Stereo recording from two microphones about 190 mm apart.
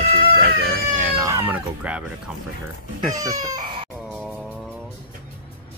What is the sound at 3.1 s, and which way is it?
Speech, 20° right (ahead or behind).